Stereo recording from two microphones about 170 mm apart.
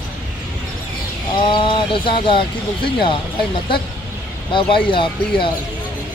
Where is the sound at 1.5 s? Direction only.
30° left (ahead or behind).